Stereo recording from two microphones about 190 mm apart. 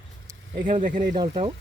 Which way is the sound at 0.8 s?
45° right (ahead or behind).